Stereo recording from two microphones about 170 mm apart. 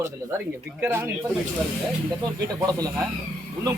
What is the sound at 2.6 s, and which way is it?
Speech, 20° right (ahead or behind).